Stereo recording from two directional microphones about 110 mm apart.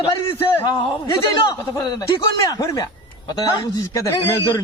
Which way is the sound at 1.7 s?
35° left (ahead or behind).